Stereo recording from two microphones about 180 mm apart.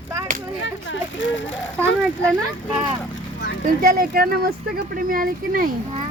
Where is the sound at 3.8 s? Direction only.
55° right (ahead or behind).